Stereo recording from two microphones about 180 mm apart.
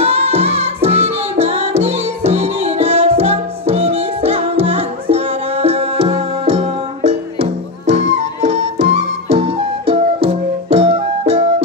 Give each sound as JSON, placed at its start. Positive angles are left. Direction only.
{"t": 0.0, "sound": "music", "side_deg": -35}